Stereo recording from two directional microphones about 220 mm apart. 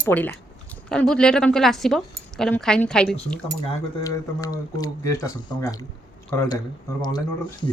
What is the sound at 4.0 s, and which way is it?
Speech, 15° left (ahead or behind).